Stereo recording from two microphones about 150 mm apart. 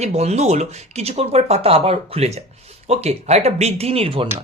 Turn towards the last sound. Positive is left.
turn(degrees=-40)  # may be behind; listen again after turning